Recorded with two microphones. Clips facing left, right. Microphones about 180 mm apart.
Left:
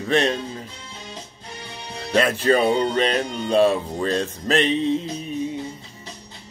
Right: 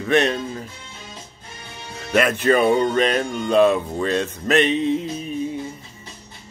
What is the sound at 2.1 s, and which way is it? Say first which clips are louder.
Speech: right 1 dB; 30° left (ahead or behind).